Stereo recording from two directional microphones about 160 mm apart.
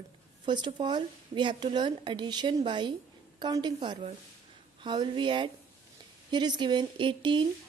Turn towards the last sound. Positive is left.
turn(degrees=-30)  # may be behind; listen again after turning